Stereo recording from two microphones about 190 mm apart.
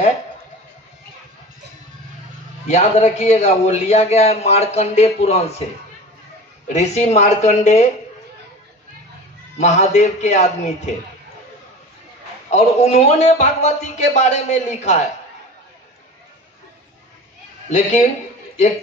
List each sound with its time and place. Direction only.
2.7 s a man's voice: 35° left (ahead or behind)
6.7 s a man's voice: 35° left (ahead or behind)
9.6 s a man's voice: 40° left (ahead or behind)
12.4 s a man's voice: 35° left (ahead or behind)
17.6 s a man's voice: 40° left (ahead or behind)